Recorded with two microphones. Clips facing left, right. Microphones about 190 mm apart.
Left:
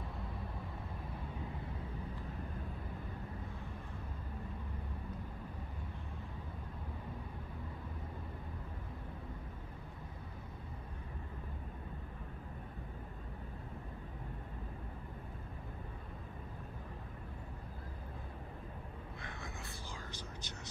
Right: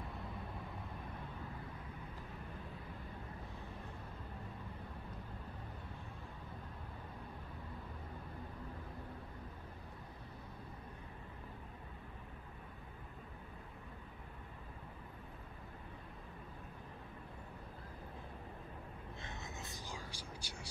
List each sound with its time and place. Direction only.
19.2 s whispering: 20° right (ahead or behind)